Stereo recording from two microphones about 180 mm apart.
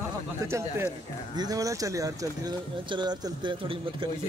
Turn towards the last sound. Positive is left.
turn(degrees=-25)  # may be behind; listen again after turning